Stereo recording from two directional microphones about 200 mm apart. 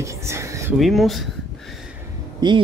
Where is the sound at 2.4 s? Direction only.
20° right (ahead or behind).